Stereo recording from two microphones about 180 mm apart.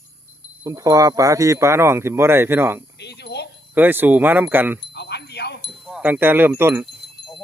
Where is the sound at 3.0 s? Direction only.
70° left (ahead or behind).